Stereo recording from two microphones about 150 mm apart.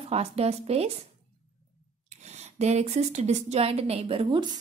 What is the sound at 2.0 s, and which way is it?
Speech, 50° right (ahead or behind).